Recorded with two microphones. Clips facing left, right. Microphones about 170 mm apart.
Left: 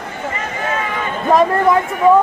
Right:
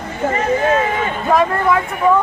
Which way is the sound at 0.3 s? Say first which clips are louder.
Right 8 dB; 40° right (ahead or behind).